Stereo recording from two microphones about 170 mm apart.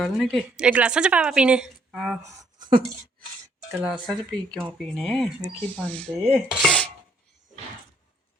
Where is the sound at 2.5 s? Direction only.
25° right (ahead or behind).